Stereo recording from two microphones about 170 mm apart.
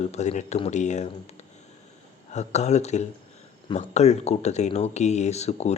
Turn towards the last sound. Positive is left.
turn(degrees=40)  # may be behind; listen again after turning